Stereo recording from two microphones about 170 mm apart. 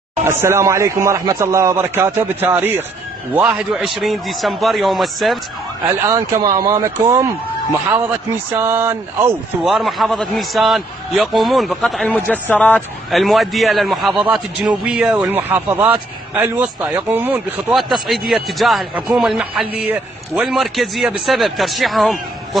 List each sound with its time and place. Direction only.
0.2 s a man's voice: 15° right (ahead or behind)
6.0 s a man's voice: 20° right (ahead or behind)
8.5 s a man's voice: 15° right (ahead or behind)
9.7 s a man's voice: centre (ahead or behind)
17.7 s a man's voice: centre (ahead or behind)